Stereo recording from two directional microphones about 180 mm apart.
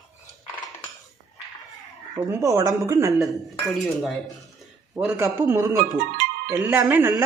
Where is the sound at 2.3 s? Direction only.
15° right (ahead or behind).